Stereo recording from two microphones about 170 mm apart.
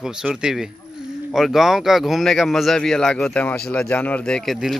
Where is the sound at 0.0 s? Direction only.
5° right (ahead or behind).